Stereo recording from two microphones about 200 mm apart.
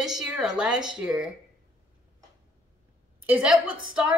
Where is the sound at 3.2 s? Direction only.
5° right (ahead or behind).